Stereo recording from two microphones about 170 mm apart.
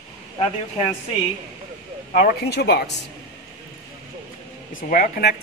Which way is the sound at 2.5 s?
75° left (ahead or behind).